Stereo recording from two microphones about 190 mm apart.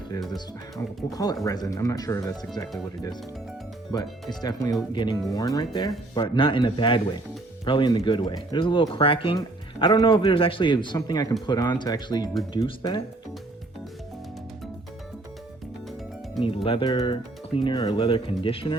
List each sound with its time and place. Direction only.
0.3 s speech: 20° left (ahead or behind)
16.6 s speech: 25° left (ahead or behind)